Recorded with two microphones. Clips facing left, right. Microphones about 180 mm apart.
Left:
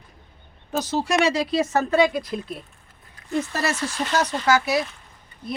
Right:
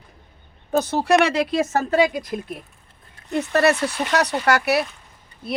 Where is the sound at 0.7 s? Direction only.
60° right (ahead or behind).